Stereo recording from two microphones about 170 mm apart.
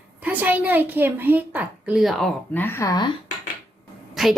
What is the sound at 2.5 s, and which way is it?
Speech, 10° left (ahead or behind).